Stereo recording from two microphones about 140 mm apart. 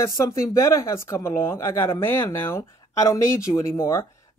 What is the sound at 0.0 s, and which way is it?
Speech, 20° left (ahead or behind).